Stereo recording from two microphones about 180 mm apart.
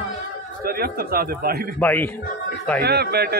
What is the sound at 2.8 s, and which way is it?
Speech, 65° right (ahead or behind).